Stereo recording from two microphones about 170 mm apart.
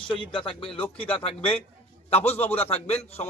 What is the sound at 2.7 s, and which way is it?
Speech, 35° left (ahead or behind).